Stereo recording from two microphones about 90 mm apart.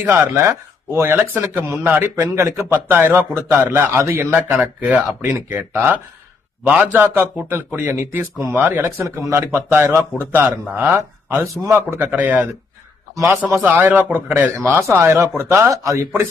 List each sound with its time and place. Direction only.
0.0 s a man's voice: 20° right (ahead or behind)
1.3 s a man's voice: 15° right (ahead or behind)
1.6 s a man's voice: 30° right (ahead or behind)
2.2 s a man's voice: 35° right (ahead or behind)
2.6 s a man's voice: 25° right (ahead or behind)
8.8 s a man's voice: 30° right (ahead or behind)